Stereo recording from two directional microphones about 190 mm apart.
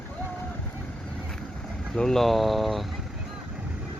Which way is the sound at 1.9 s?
5° left (ahead or behind).